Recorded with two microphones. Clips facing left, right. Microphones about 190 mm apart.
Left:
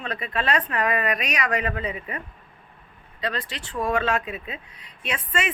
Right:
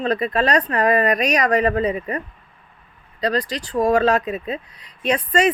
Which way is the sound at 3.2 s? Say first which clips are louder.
Right 8 dB; 40° right (ahead or behind).